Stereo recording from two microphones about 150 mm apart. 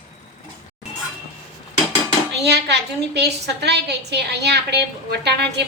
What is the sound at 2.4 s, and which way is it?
A woman's voice, 90° right.